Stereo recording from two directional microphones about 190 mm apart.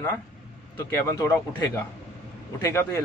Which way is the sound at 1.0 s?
15° left (ahead or behind).